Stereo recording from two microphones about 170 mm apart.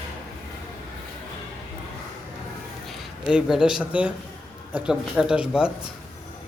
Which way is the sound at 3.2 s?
5° right (ahead or behind).